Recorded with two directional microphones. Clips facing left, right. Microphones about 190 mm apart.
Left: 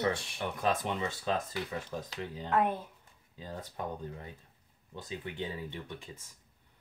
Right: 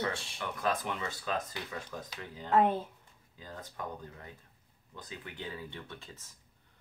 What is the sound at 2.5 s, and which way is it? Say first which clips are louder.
Speech: right 3 dB; 25° right (ahead or behind).